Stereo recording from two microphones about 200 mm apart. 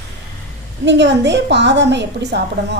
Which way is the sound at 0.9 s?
60° right (ahead or behind).